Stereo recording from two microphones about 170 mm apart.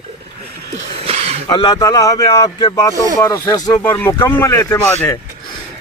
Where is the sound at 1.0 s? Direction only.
35° right (ahead or behind).